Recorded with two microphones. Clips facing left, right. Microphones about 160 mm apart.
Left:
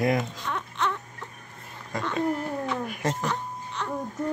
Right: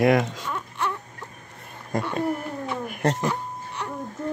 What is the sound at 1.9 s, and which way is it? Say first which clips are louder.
Speech: right 1 dB; 50° right (ahead or behind).